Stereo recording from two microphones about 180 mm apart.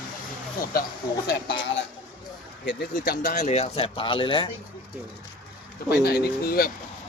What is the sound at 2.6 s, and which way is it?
Speech, 90° left.